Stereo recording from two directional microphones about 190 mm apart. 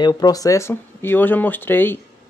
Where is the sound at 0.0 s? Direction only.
20° left (ahead or behind).